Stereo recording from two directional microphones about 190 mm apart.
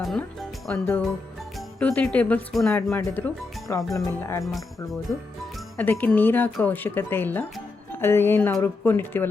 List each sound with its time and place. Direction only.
0.0 s speech: centre (ahead or behind)
5.5 s speech: 10° left (ahead or behind)